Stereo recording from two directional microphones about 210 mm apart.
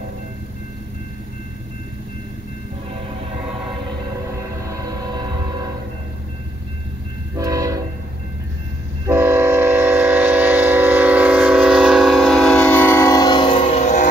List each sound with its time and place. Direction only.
7.3 s train: 15° right (ahead or behind)
9.0 s train: 15° right (ahead or behind); by 14.0 s 30° left (ahead or behind)